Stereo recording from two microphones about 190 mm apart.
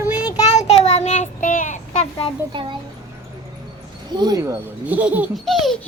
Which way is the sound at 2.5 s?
25° right (ahead or behind).